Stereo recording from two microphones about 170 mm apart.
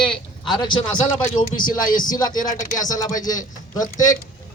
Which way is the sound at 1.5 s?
55° left (ahead or behind).